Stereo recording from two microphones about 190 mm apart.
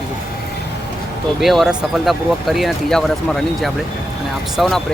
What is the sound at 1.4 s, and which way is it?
Speech, centre (ahead or behind).